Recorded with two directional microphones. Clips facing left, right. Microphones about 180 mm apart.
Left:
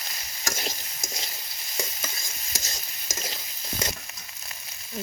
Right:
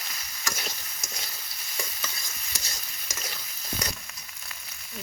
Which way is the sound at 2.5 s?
45° left (ahead or behind).